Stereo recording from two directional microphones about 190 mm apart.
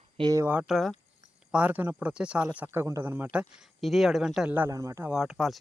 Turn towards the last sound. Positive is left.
turn(degrees=0)  # may be behind; listen again after turning